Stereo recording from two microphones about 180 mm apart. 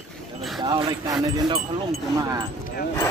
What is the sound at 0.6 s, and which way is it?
Speech, 25° right (ahead or behind).